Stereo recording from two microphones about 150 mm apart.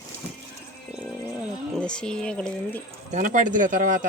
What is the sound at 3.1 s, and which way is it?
Speech, 60° right (ahead or behind).